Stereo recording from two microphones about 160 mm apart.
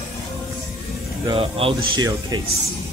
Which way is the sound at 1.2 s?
35° right (ahead or behind).